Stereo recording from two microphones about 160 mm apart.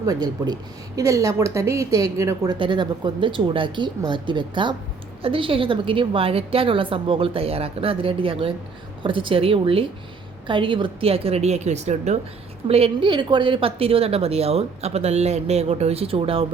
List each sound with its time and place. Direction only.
0.0 s a woman's voice: 25° right (ahead or behind)